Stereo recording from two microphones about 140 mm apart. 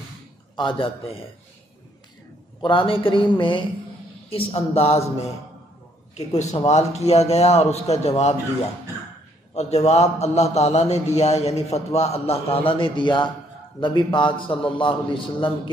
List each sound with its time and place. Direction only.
0.6 s speech: 40° left (ahead or behind)
2.6 s a man's voice: 35° left (ahead or behind)
6.1 s a man's voice: 55° left (ahead or behind)
9.5 s a man's voice: 50° left (ahead or behind)